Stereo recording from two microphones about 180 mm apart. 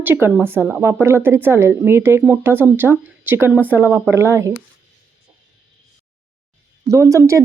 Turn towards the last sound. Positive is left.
turn(degrees=-20)  # may be behind; listen again after turning